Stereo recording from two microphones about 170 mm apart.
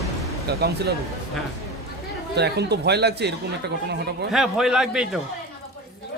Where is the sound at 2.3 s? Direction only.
75° right (ahead or behind).